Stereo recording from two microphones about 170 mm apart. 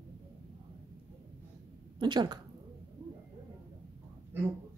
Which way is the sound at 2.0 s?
25° right (ahead or behind).